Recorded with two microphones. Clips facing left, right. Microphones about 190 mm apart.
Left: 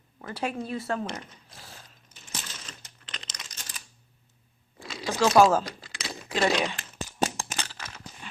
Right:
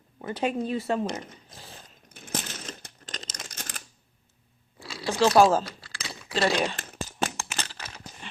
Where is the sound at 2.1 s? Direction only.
55° right (ahead or behind).